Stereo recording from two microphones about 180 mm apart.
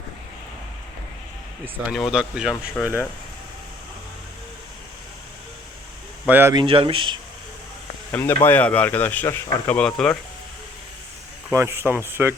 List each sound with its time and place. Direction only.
2.0 s speech: 5° right (ahead or behind)
2.7 s speech: 10° left (ahead or behind)
6.2 s speech: 10° right (ahead or behind)
6.5 s speech: 25° right (ahead or behind)
8.1 s speech: 10° left (ahead or behind)
11.5 s speech: 15° right (ahead or behind)